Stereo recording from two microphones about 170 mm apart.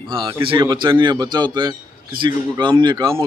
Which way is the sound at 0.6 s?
25° right (ahead or behind).